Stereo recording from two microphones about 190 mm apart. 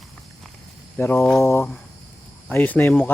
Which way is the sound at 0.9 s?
10° left (ahead or behind).